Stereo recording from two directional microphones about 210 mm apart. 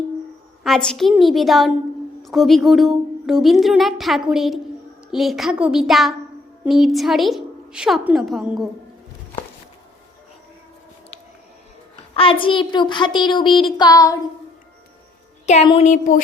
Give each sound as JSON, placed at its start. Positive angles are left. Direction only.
{"t": 0.6, "sound": "a woman's voice", "side_deg": 5}
{"t": 12.1, "sound": "a child's voice", "side_deg": 25}
{"t": 15.4, "sound": "a sound", "side_deg": 30}